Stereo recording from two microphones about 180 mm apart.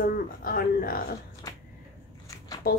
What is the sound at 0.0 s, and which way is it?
Speech, 50° left (ahead or behind).